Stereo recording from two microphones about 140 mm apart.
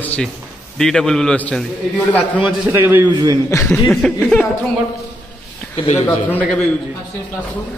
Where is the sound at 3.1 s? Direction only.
30° right (ahead or behind).